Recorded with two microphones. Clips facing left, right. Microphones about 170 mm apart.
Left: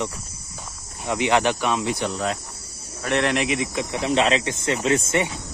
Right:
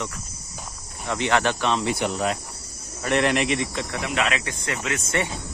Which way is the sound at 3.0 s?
Centre (ahead or behind).